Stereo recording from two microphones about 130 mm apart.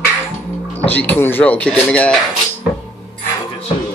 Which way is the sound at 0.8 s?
15° left (ahead or behind).